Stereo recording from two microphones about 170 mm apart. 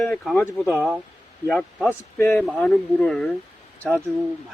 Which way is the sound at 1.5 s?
5° left (ahead or behind).